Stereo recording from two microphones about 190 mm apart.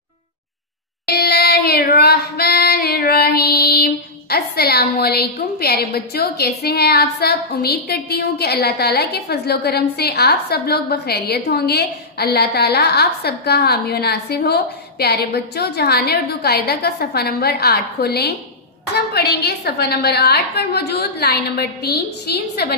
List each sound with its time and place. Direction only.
1.0 s female singing: 55° left (ahead or behind)
19.1 s a woman's voice: 55° left (ahead or behind)